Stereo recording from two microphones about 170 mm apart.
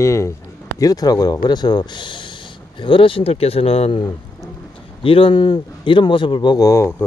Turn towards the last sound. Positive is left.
turn(degrees=15)  # may be behind; listen again after turning